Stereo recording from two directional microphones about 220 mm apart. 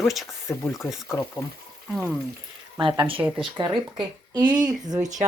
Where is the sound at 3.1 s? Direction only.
5° right (ahead or behind).